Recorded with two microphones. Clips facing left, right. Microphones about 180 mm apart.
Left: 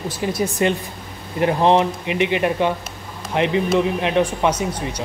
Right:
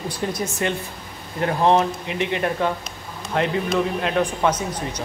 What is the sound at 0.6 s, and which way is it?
Speech, 20° left (ahead or behind).